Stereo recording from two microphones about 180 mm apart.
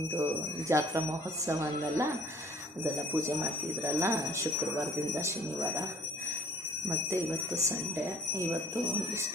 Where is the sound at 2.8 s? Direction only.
15° right (ahead or behind).